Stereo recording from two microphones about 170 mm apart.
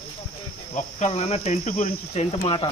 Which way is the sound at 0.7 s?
40° left (ahead or behind).